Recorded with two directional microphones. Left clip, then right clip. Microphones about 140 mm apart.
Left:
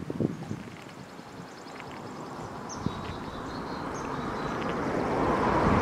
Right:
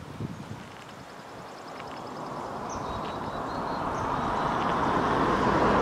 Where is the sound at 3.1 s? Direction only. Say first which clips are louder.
Right 5 dB; 35° right (ahead or behind).